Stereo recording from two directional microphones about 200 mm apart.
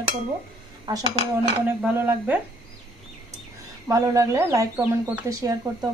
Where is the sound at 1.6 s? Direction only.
10° right (ahead or behind).